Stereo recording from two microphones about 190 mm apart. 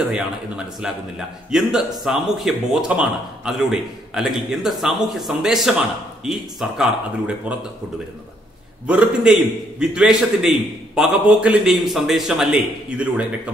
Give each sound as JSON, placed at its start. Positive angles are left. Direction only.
{"t": 0.1, "sound": "a man's voice", "side_deg": -5}
{"t": 8.8, "sound": "a man's voice", "side_deg": -5}